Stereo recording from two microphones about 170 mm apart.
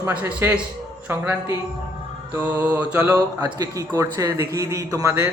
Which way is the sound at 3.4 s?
25° right (ahead or behind).